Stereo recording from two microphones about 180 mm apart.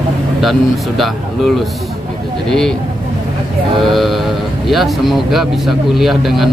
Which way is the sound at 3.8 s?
Centre (ahead or behind).